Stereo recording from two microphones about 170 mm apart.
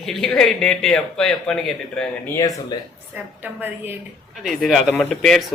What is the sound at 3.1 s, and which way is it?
Speech, 10° right (ahead or behind).